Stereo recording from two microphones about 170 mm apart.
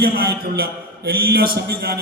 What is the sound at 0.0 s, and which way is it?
A man's voice, 65° right (ahead or behind).